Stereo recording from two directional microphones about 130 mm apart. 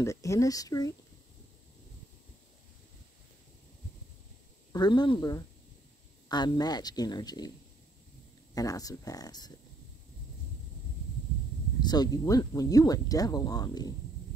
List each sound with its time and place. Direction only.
0.0 s speech: 25° left (ahead or behind)
4.7 s speech: 35° left (ahead or behind)
8.5 s speech: 25° left (ahead or behind)
11.8 s speech: 30° left (ahead or behind)